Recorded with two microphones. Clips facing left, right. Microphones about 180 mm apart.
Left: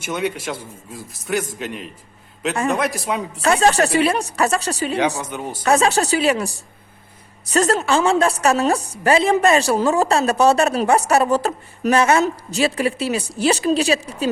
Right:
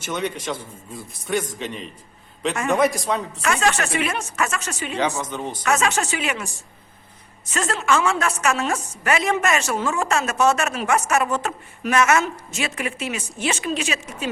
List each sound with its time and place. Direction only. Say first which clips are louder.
0.0 s a man's voice: left 3 dB; 10° left (ahead or behind)
3.4 s a woman's voice: left 7 dB; 35° left (ahead or behind)
5.2 s a man's voice: left 1 dB; 10° left (ahead or behind)
5.6 s a woman's voice: left 5 dB; 35° left (ahead or behind)